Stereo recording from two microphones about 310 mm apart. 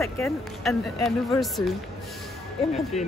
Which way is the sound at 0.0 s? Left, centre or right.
Centre.